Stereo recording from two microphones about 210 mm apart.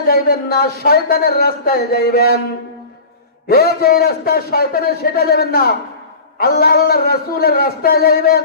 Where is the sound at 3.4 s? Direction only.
45° left (ahead or behind).